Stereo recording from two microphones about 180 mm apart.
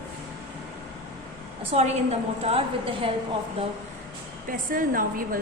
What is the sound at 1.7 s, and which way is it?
Speech, 35° right (ahead or behind).